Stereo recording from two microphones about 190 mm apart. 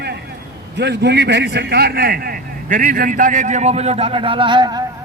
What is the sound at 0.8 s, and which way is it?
A man's voice, 65° right (ahead or behind).